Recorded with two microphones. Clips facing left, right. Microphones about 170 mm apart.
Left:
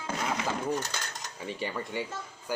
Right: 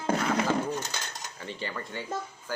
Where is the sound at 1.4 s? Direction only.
10° left (ahead or behind).